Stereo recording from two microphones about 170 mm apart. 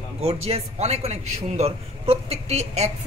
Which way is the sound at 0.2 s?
35° right (ahead or behind).